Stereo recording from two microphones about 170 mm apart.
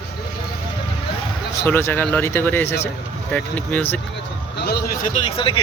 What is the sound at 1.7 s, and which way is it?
Speech, 15° left (ahead or behind).